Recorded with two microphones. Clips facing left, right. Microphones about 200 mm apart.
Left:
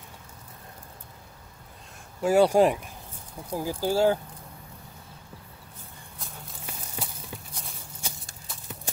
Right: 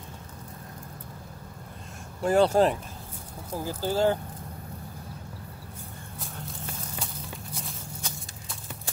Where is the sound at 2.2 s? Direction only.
10° left (ahead or behind).